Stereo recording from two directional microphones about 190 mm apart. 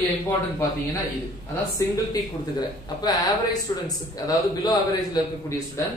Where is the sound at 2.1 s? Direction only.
20° left (ahead or behind).